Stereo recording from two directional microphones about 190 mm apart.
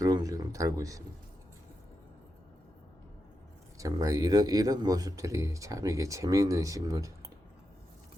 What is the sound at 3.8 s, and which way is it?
Speech, 15° right (ahead or behind).